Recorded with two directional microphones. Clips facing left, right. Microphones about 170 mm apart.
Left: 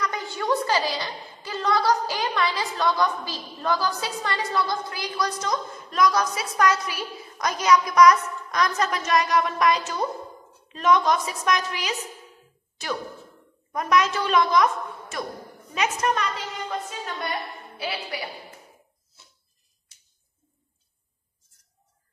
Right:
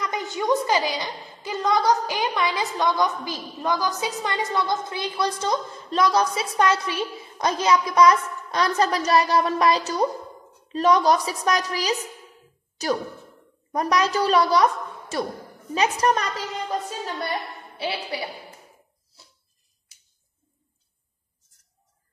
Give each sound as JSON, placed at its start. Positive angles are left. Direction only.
{"t": 0.0, "sound": "a woman's voice", "side_deg": -20}
{"t": 13.7, "sound": "a woman's voice", "side_deg": -35}
{"t": 17.7, "sound": "a woman's voice", "side_deg": -30}